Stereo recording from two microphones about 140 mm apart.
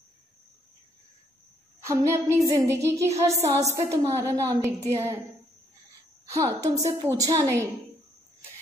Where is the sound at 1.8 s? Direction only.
20° right (ahead or behind).